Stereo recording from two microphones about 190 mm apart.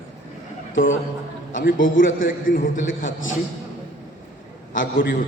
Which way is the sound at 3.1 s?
90° left.